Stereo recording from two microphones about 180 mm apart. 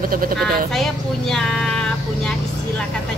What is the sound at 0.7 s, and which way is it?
Speech, centre (ahead or behind).